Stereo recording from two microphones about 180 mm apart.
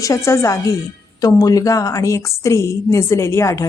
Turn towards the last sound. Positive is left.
turn(degrees=15)  # may be behind; listen again after turning